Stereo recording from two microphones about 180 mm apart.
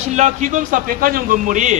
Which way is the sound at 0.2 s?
45° right (ahead or behind).